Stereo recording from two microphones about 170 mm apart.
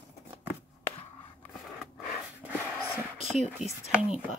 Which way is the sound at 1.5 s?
Centre (ahead or behind).